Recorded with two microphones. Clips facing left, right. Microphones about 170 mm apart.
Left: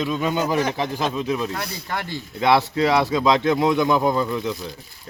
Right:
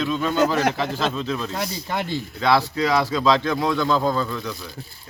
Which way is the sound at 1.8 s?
20° right (ahead or behind).